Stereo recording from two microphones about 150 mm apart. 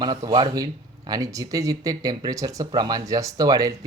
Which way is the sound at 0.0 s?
30° right (ahead or behind).